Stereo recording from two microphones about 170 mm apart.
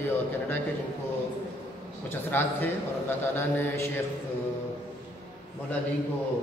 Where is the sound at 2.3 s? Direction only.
10° left (ahead or behind).